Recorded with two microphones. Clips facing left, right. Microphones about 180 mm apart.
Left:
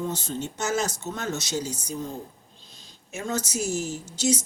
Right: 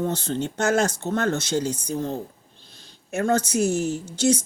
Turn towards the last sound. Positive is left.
turn(degrees=-60)  # may be behind; listen again after turning